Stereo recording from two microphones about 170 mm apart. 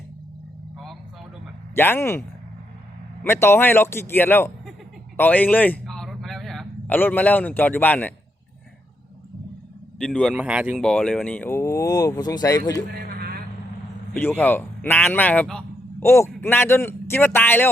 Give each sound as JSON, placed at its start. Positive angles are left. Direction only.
{"t": 1.7, "sound": "speech", "side_deg": 15}
{"t": 3.2, "sound": "a man's voice", "side_deg": 15}
{"t": 10.0, "sound": "speech", "side_deg": 5}
{"t": 10.8, "sound": "speech", "side_deg": 5}
{"t": 13.1, "sound": "vehicle", "side_deg": -65}
{"t": 14.2, "sound": "a man's voice", "side_deg": 10}